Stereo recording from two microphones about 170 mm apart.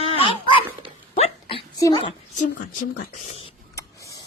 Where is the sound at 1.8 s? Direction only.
25° left (ahead or behind).